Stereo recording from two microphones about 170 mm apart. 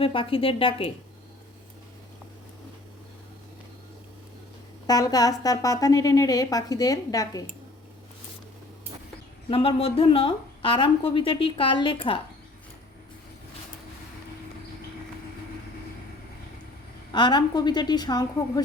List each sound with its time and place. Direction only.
0.0 s a woman's voice: 30° left (ahead or behind)
4.9 s a woman's voice: 20° left (ahead or behind)
9.5 s a woman's voice: 35° left (ahead or behind)
17.1 s a woman's voice: 25° left (ahead or behind)